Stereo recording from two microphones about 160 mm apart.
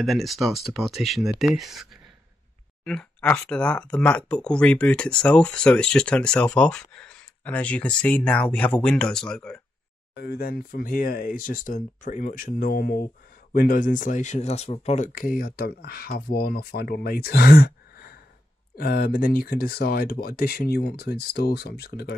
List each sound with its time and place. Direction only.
0.0 s speech: centre (ahead or behind)
10.1 s speech: 75° left (ahead or behind); by 15.0 s 40° left (ahead or behind)
15.1 s speech: 60° left (ahead or behind); by 22.1 s 90° left